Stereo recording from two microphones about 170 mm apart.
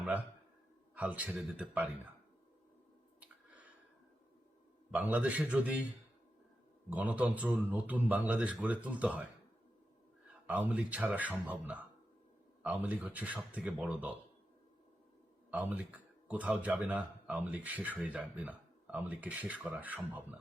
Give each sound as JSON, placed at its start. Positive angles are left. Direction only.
{"t": 0.9, "sound": "speech", "side_deg": -10}
{"t": 4.9, "sound": "speech", "side_deg": -10}
{"t": 6.9, "sound": "speech", "side_deg": -10}
{"t": 10.4, "sound": "speech", "side_deg": -10}
{"t": 15.4, "sound": "speech", "side_deg": -10}